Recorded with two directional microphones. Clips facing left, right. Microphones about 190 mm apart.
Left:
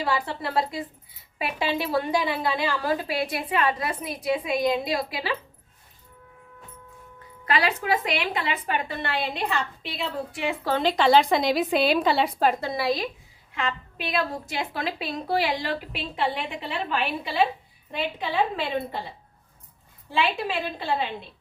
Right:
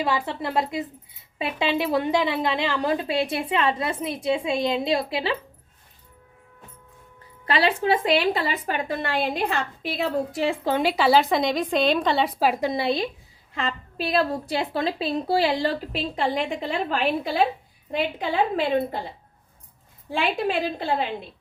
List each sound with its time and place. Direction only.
0.0 s a woman's voice: 20° right (ahead or behind)
7.4 s a woman's voice: 30° right (ahead or behind)
10.6 s a woman's voice: 15° right (ahead or behind)
12.5 s a woman's voice: 20° right (ahead or behind); by 18.9 s 45° right (ahead or behind)